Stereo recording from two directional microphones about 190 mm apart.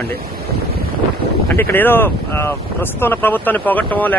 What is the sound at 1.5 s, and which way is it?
Speech, 10° left (ahead or behind).